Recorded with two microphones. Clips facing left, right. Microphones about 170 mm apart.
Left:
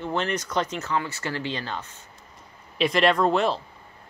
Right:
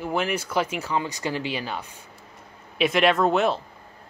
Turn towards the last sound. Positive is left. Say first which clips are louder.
# right 1 dB
turn(degrees=0)  # may be behind; listen again after turning